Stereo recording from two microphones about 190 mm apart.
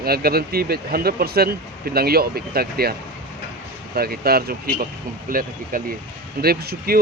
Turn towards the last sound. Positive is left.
turn(degrees=-50)  # may be behind; listen again after turning